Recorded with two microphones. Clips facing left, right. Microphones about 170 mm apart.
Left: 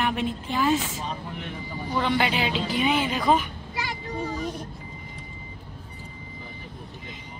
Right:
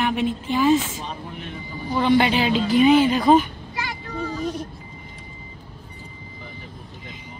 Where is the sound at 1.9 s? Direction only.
20° right (ahead or behind).